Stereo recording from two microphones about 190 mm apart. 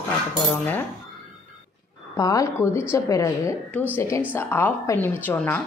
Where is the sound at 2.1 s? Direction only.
15° left (ahead or behind).